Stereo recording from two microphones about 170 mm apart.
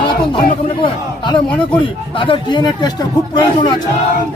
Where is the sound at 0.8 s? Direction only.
25° left (ahead or behind).